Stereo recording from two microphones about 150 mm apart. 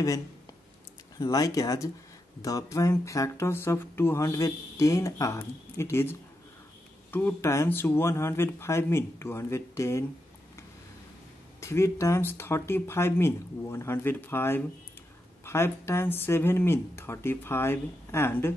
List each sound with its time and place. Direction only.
1.1 s speech: 25° left (ahead or behind)
11.6 s speech: 20° left (ahead or behind)